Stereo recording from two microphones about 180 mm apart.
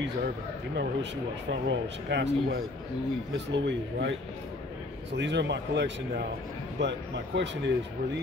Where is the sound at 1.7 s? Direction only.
80° right.